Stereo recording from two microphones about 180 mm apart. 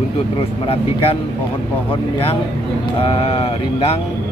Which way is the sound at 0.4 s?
35° left (ahead or behind).